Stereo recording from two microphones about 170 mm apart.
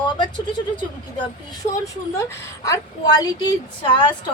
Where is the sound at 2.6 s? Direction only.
20° left (ahead or behind).